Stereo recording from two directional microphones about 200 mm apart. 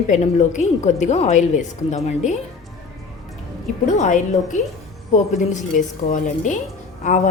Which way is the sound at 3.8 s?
35° left (ahead or behind).